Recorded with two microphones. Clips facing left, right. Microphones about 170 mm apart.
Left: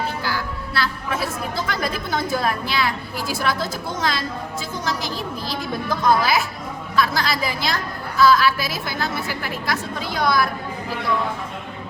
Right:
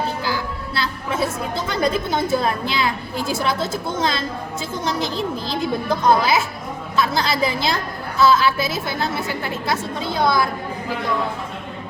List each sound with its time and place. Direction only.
0.3 s a woman's voice: 25° right (ahead or behind)